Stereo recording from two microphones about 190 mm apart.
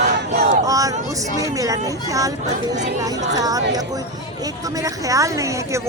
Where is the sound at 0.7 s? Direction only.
20° right (ahead or behind).